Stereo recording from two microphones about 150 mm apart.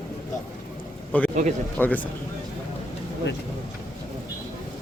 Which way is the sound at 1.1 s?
10° left (ahead or behind).